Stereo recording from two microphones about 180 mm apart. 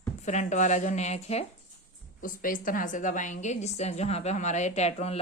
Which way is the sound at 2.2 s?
50° left (ahead or behind).